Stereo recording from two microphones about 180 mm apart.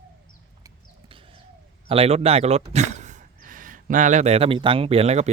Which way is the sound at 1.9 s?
35° right (ahead or behind).